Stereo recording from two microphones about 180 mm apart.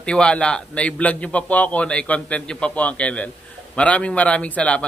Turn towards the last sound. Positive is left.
turn(degrees=5)  # may be behind; listen again after turning